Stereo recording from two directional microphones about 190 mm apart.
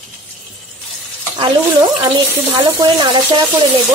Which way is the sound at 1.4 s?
20° right (ahead or behind).